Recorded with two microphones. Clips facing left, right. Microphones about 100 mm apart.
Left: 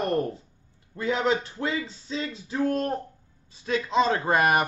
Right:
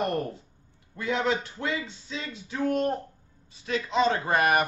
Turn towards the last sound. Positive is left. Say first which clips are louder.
# left 1 dB
turn(degrees=35)  # may be behind; listen again after turning